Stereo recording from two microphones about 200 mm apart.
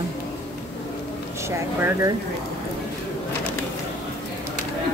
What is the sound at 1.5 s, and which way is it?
Speech, 15° right (ahead or behind).